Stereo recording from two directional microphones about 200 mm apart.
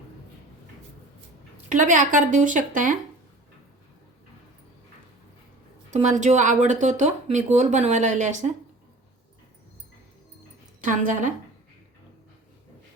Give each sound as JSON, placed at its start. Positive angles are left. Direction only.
{"t": 1.7, "sound": "speech", "side_deg": -40}
{"t": 5.9, "sound": "speech", "side_deg": -35}
{"t": 10.8, "sound": "speech", "side_deg": -40}